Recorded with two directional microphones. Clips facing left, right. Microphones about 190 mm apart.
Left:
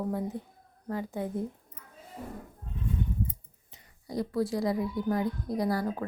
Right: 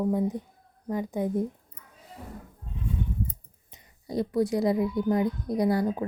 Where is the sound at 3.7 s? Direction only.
25° right (ahead or behind).